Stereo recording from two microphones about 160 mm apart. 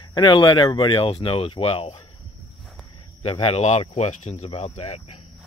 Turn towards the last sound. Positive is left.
turn(degrees=40)  # may be behind; listen again after turning